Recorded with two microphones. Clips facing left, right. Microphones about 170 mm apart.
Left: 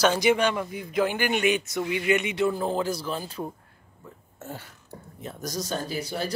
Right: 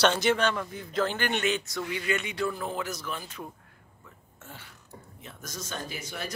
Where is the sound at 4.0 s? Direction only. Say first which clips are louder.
Left 9 dB; 40° left (ahead or behind).